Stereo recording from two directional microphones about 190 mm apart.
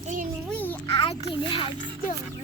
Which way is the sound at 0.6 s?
10° left (ahead or behind).